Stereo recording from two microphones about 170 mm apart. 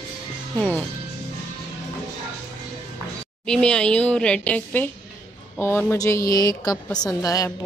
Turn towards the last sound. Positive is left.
turn(degrees=20)  # may be behind; listen again after turning